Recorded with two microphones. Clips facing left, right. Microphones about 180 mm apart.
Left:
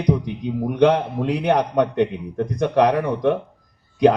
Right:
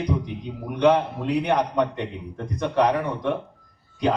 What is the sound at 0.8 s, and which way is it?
A man's voice, 65° left (ahead or behind).